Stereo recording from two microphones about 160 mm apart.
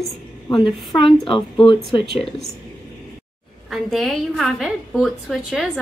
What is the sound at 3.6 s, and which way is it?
A woman's voice, centre (ahead or behind).